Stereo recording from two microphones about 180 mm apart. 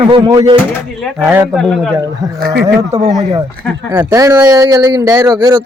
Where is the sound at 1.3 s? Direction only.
5° right (ahead or behind).